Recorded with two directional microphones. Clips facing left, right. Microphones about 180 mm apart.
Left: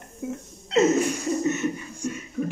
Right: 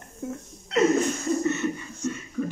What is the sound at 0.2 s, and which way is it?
Speech, 10° left (ahead or behind).